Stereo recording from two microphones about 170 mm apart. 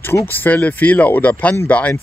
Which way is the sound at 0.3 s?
10° left (ahead or behind).